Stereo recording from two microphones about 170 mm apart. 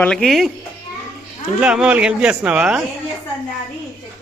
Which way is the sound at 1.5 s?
5° right (ahead or behind).